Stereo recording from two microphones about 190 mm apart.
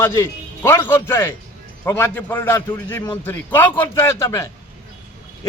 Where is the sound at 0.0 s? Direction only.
15° left (ahead or behind).